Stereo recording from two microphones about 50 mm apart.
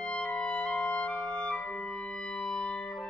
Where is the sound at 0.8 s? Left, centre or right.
Centre.